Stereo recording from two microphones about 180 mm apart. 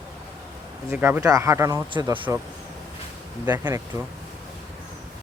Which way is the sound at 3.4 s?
20° right (ahead or behind).